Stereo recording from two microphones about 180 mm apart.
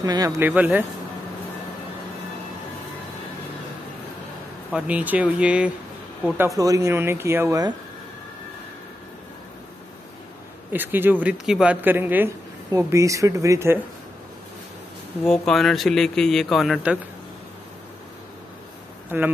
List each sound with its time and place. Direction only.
0.0 s speech: 20° right (ahead or behind)
0.5 s speech: 10° right (ahead or behind)
4.7 s speech: 5° right (ahead or behind)
10.7 s speech: 10° right (ahead or behind)
15.2 s speech: 5° left (ahead or behind)
19.0 s speech: 10° right (ahead or behind)